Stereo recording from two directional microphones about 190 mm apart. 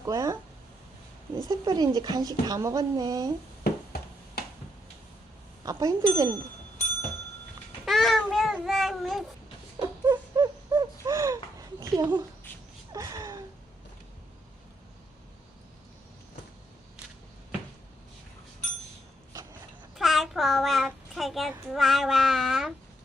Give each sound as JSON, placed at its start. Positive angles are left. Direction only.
{"t": 0.0, "sound": "speech", "side_deg": -20}
{"t": 1.5, "sound": "speech", "side_deg": -20}
{"t": 3.6, "sound": "a sound", "side_deg": 55}
{"t": 5.6, "sound": "speech", "side_deg": -20}
{"t": 7.9, "sound": "child singing", "side_deg": 0}
{"t": 9.7, "sound": "a sound", "side_deg": -20}
{"t": 11.8, "sound": "speech", "side_deg": -20}
{"t": 12.9, "sound": "a sound", "side_deg": -20}
{"t": 20.0, "sound": "child singing", "side_deg": 0}